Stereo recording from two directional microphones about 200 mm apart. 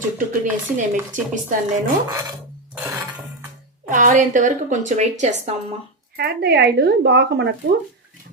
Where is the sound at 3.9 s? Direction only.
40° right (ahead or behind).